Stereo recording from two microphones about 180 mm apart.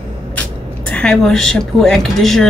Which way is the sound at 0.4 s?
5° left (ahead or behind).